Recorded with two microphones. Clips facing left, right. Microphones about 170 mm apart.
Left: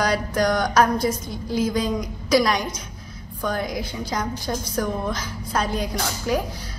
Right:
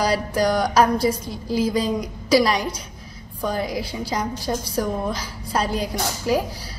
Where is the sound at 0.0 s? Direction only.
30° right (ahead or behind).